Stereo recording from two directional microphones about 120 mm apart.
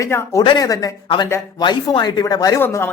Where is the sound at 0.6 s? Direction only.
30° left (ahead or behind).